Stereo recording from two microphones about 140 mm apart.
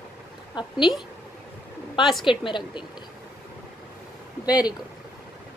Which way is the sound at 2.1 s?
Centre (ahead or behind).